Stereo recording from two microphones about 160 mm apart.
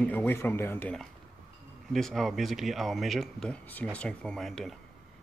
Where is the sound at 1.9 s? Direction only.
Centre (ahead or behind).